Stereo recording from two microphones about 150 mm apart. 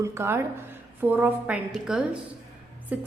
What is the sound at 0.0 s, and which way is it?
A woman's voice, 20° right (ahead or behind).